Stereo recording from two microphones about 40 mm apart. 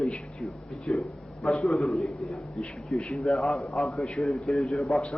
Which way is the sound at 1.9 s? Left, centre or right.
Left.